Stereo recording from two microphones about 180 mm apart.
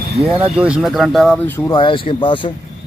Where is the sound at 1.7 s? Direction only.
25° left (ahead or behind).